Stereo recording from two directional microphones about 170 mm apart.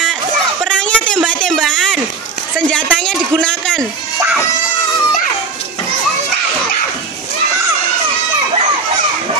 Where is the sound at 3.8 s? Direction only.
15° right (ahead or behind).